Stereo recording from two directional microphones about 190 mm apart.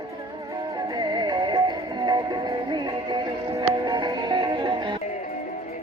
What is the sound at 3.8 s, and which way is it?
Music, 20° right (ahead or behind).